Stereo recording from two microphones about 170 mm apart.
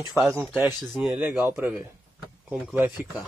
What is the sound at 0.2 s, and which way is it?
Speech, 15° right (ahead or behind).